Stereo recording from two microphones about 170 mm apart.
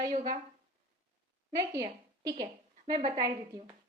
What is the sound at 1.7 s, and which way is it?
Speech, 20° right (ahead or behind).